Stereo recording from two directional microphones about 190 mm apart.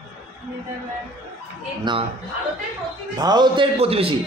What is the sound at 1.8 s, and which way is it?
Speech, 25° right (ahead or behind).